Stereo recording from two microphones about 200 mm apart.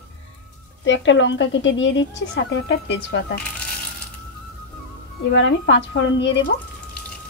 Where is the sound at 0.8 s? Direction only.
65° left (ahead or behind).